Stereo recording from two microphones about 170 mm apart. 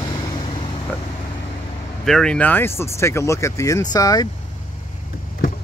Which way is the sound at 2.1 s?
5° left (ahead or behind).